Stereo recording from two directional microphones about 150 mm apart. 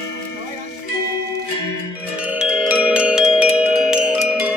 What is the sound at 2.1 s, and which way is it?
Tubular bells, 10° right (ahead or behind).